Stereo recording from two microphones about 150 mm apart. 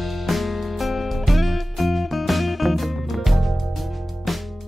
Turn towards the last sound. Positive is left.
turn(degrees=0)  # may be behind; listen again after turning